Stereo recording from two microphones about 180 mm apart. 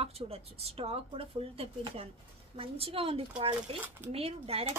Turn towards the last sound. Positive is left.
turn(degrees=-35)  # may be behind; listen again after turning